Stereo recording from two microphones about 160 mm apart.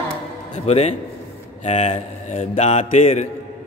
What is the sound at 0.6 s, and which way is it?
Speech, 40° left (ahead or behind).